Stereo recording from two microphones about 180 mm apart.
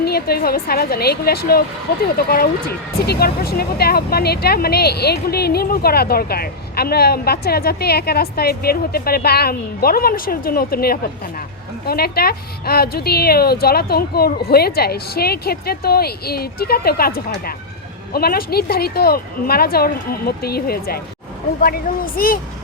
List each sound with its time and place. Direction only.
0.0 s speech: 60° left (ahead or behind)